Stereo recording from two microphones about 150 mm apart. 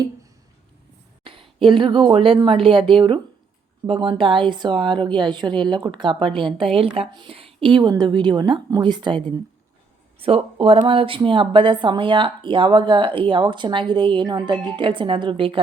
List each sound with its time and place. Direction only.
1.2 s a woman's voice: 35° right (ahead or behind)